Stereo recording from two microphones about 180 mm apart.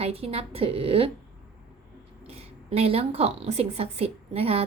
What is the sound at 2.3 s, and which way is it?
A woman's voice, 35° right (ahead or behind).